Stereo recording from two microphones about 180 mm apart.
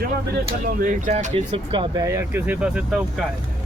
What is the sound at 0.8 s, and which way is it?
Speech, 40° right (ahead or behind).